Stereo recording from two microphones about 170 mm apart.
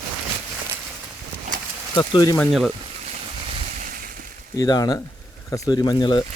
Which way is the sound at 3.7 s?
50° right (ahead or behind).